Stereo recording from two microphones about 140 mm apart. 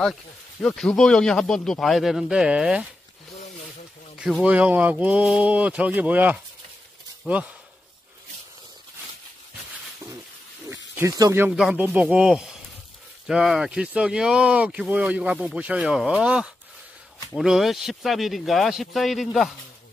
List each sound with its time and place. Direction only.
0.0 s speech: 5° left (ahead or behind)
4.2 s speech: 5° right (ahead or behind)
10.7 s snake: 20° right (ahead or behind)
11.5 s speech: 5° right (ahead or behind)